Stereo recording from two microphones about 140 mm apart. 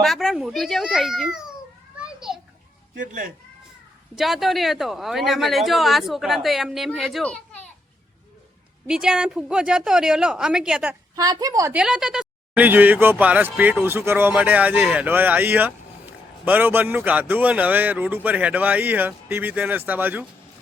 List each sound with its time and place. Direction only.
0.0 s speech: centre (ahead or behind)
2.0 s children playing: 5° right (ahead or behind)
3.0 s speech: 70° right (ahead or behind)
4.1 s speech: centre (ahead or behind)
8.9 s speech: 5° right (ahead or behind)
11.1 s a woman's voice: 25° right (ahead or behind)
11.7 s speech: 5° right (ahead or behind)